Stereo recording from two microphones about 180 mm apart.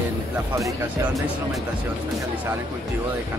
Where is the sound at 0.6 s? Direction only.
15° right (ahead or behind).